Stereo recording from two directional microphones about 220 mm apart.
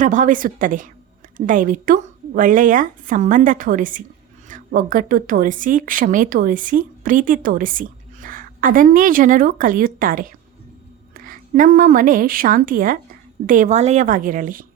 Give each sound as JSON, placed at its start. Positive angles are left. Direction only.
{"t": 0.0, "sound": "a woman's voice", "side_deg": -35}